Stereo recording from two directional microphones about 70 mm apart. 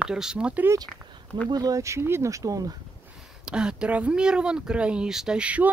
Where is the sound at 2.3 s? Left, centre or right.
Right.